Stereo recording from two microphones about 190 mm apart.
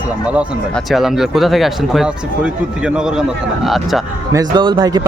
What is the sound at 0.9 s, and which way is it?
Speech, centre (ahead or behind).